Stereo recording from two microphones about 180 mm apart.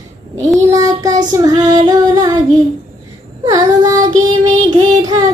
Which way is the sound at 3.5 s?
20° right (ahead or behind).